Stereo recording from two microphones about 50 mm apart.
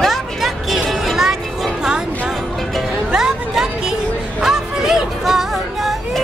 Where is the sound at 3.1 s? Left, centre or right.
Centre.